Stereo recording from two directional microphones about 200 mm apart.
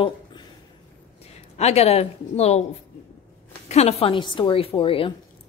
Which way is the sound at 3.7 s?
30° left (ahead or behind).